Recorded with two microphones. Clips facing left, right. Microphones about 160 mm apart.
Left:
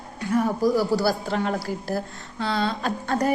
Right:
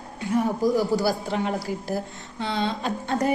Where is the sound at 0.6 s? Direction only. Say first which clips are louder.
Left 1 dB; 20° right (ahead or behind).